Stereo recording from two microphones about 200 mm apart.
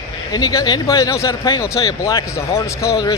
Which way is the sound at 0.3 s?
20° left (ahead or behind).